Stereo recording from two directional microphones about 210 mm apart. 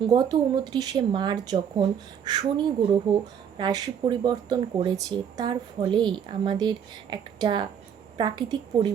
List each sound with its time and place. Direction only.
0.1 s speech: 20° right (ahead or behind)